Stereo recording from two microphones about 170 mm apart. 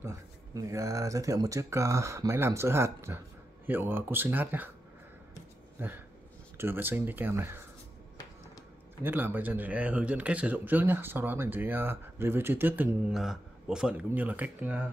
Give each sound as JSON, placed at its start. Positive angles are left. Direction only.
{"t": 0.0, "sound": "a man's voice", "side_deg": -15}
{"t": 5.8, "sound": "a sound", "side_deg": -10}
{"t": 6.6, "sound": "a man's voice", "side_deg": -10}
{"t": 9.0, "sound": "a man's voice", "side_deg": -10}